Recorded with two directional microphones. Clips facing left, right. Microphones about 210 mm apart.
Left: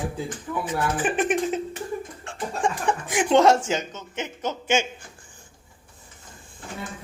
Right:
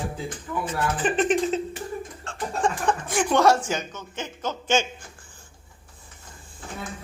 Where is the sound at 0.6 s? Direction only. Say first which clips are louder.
Even; 15° left (ahead or behind).